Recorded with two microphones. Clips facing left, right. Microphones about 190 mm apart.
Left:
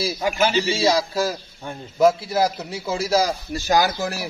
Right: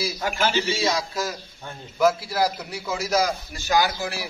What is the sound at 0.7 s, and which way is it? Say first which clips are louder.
A man's voice: left 5 dB; 30° left (ahead or behind).